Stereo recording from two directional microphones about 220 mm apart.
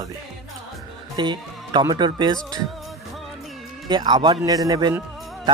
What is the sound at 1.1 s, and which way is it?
Speech, 20° right (ahead or behind).